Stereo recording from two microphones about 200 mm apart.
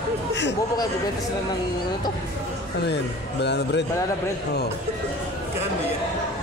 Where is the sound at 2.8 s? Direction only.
55° left (ahead or behind).